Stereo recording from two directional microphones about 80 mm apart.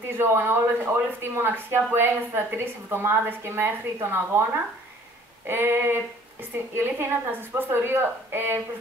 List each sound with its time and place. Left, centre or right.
0.2 s a woman's voice: right
5.5 s a woman's voice: right